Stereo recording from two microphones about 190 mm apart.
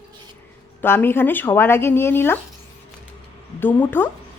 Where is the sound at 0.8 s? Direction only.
10° left (ahead or behind).